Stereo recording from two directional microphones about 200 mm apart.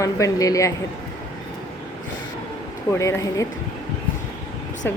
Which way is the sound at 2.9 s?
15° left (ahead or behind).